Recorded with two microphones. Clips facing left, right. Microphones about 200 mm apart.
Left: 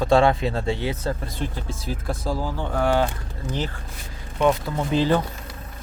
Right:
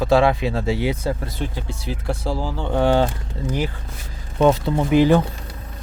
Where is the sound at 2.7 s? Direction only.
30° right (ahead or behind).